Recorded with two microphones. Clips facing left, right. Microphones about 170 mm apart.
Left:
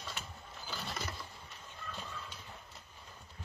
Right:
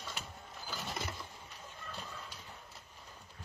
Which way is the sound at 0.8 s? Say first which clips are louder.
Right 1 dB; 20° right (ahead or behind).